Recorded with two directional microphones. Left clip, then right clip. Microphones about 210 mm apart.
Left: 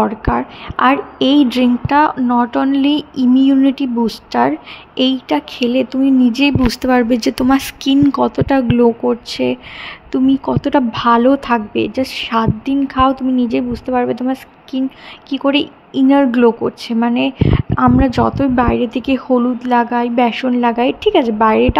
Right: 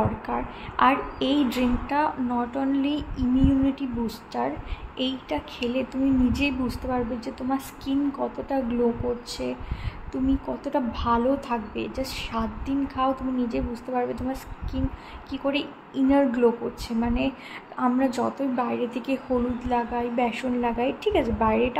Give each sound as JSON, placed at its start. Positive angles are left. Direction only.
{"t": 0.2, "sound": "a woman's voice", "side_deg": 30}
{"t": 6.8, "sound": "a woman's voice", "side_deg": 45}